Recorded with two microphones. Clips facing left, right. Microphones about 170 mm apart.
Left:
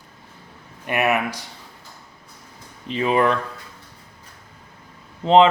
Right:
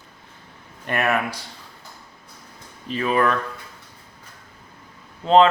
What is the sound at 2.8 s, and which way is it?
Speech, 20° left (ahead or behind).